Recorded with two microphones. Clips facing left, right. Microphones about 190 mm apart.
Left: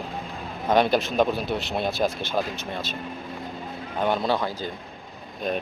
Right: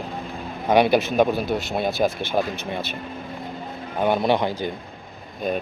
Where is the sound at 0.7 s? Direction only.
10° right (ahead or behind).